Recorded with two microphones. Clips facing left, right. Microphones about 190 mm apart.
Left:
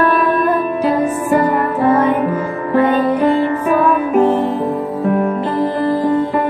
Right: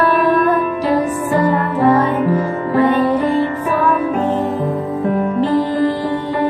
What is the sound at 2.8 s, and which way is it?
Music, 40° left (ahead or behind).